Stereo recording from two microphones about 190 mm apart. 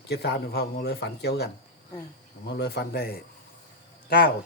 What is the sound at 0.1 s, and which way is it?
A man's voice, 60° left (ahead or behind).